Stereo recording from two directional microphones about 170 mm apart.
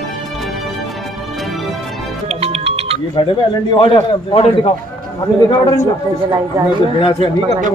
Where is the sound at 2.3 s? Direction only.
35° right (ahead or behind).